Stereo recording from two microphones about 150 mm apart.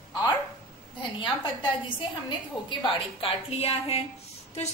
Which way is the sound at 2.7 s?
35° left (ahead or behind).